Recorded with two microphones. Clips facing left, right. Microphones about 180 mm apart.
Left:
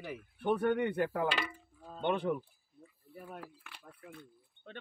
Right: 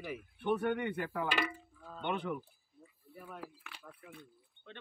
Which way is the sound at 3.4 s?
10° right (ahead or behind).